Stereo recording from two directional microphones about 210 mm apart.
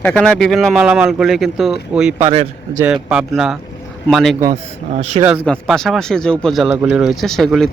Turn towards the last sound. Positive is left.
turn(degrees=0)  # may be behind; listen again after turning